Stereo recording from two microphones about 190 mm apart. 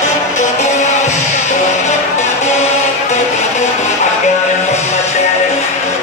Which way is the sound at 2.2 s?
35° left (ahead or behind).